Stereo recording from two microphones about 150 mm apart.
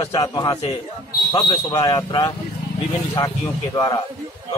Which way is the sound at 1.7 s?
30° left (ahead or behind).